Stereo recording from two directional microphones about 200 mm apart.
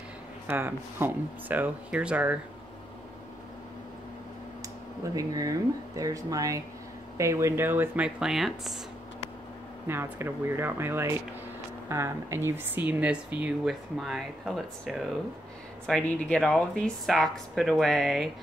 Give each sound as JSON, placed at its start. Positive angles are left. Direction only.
{"t": 0.5, "sound": "speech", "side_deg": -10}
{"t": 5.1, "sound": "speech", "side_deg": -15}
{"t": 9.8, "sound": "speech", "side_deg": -10}